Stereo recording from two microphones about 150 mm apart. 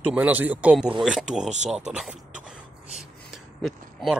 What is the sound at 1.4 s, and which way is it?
Speech, 50° right (ahead or behind).